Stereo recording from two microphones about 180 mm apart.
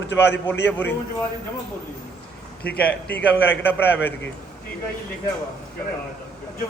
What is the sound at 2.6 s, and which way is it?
A man's voice, 10° left (ahead or behind).